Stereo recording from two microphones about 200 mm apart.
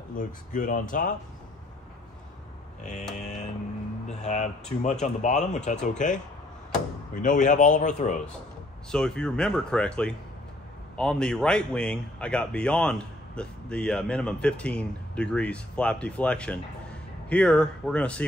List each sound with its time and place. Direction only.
0.1 s speech: 40° left (ahead or behind)
4.1 s speech: 35° left (ahead or behind)
8.9 s speech: 5° left (ahead or behind)